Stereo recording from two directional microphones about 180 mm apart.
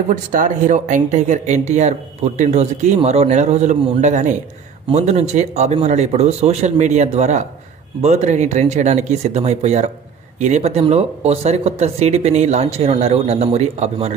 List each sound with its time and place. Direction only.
0.1 s speech: 45° right (ahead or behind)